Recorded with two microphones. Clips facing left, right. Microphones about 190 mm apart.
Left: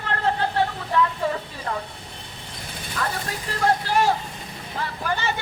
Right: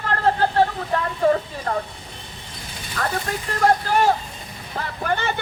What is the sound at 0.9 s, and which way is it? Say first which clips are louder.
Speech: right 4 dB; 45° right (ahead or behind).